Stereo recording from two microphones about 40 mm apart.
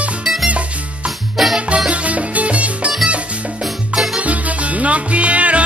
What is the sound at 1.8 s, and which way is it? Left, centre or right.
Music, right.